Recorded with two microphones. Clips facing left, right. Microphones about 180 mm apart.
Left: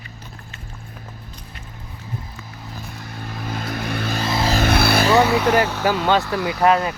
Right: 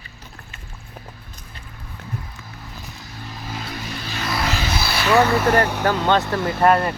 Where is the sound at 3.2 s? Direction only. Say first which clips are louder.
Left 4 dB; 55° left (ahead or behind).